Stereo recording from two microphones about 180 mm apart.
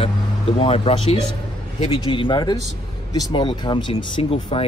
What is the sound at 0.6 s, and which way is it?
Speech, 30° left (ahead or behind).